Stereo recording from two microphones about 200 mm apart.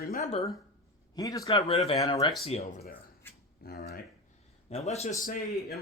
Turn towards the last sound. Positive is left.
turn(degrees=50)  # may be behind; listen again after turning